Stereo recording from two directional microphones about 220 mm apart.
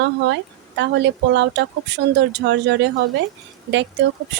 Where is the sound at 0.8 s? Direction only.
50° right (ahead or behind).